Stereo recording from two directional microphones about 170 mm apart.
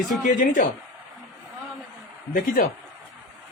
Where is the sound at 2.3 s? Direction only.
55° left (ahead or behind).